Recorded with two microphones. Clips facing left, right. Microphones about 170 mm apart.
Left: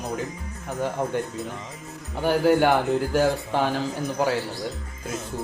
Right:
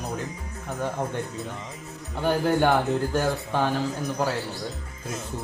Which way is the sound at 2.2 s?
5° left (ahead or behind).